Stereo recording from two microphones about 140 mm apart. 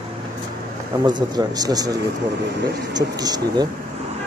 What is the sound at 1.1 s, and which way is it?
Speech, 30° right (ahead or behind).